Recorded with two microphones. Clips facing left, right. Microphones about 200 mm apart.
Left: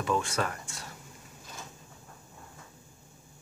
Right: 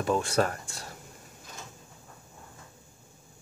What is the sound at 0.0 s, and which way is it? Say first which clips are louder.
Speech: right 4 dB; 35° right (ahead or behind).